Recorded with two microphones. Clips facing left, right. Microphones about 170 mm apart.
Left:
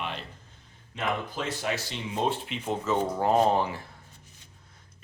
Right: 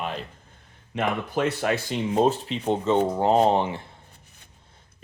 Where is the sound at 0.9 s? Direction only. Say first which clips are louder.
Right 6 dB; 60° right (ahead or behind); by 3.8 s 25° right (ahead or behind).